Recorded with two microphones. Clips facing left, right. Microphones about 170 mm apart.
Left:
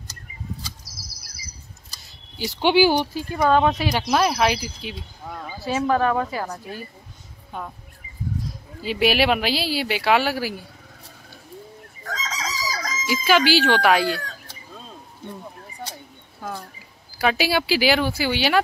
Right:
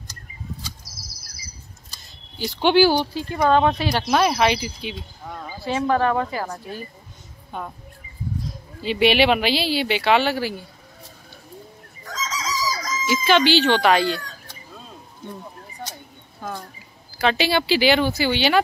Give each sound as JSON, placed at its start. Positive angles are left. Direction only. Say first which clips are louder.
{"t": 2.3, "sound": "speech", "louder": "right 1 dB", "side_deg": 10}
{"t": 7.5, "sound": "speech", "louder": "right 1 dB", "side_deg": 0}
{"t": 8.8, "sound": "speech", "louder": "right 2 dB", "side_deg": 0}
{"t": 12.0, "sound": "chicken", "louder": "right 1 dB", "side_deg": 60}
{"t": 13.0, "sound": "speech", "louder": "right 1 dB", "side_deg": 5}
{"t": 16.4, "sound": "speech", "louder": "right 1 dB", "side_deg": 5}